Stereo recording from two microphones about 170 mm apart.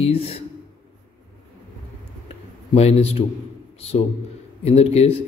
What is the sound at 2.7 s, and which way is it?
A man's voice, 40° left (ahead or behind).